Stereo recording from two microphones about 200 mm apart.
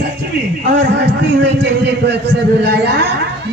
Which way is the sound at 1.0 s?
60° right (ahead or behind).